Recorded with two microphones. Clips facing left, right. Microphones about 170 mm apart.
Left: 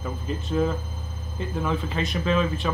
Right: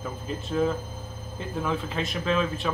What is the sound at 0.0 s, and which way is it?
Speech, centre (ahead or behind).